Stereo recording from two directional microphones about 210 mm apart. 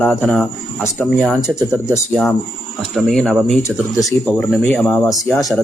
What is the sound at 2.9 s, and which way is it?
Speech, centre (ahead or behind).